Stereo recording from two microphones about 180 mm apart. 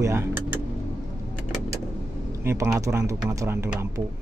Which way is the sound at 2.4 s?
15° right (ahead or behind).